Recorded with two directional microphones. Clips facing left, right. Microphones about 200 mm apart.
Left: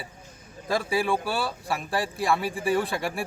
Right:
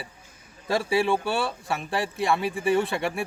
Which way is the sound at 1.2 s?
Centre (ahead or behind).